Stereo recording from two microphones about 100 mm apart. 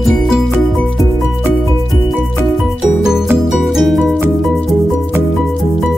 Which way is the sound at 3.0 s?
5° right (ahead or behind).